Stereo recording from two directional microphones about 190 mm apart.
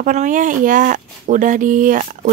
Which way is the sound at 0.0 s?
40° right (ahead or behind).